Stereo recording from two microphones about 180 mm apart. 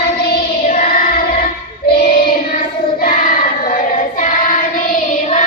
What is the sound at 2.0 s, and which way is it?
Child singing, 55° left (ahead or behind).